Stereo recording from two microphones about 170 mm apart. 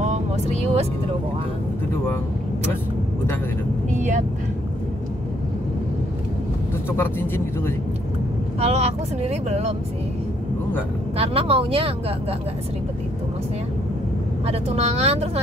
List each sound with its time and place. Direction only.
0.0 s music: 40° right (ahead or behind)
3.9 s speech: 45° right (ahead or behind)
6.9 s speech: 15° left (ahead or behind)
8.5 s speech: 40° right (ahead or behind)
11.1 s speech: 35° right (ahead or behind)
14.4 s speech: 35° right (ahead or behind)